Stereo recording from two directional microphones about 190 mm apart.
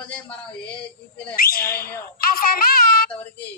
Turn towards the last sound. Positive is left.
turn(degrees=50)  # may be behind; listen again after turning